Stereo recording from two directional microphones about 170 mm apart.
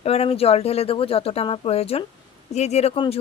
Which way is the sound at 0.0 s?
35° left (ahead or behind).